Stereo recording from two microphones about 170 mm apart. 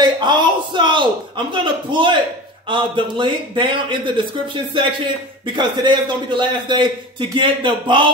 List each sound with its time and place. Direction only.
0.0 s a man's voice: 25° right (ahead or behind)
5.6 s a man's voice: 25° right (ahead or behind)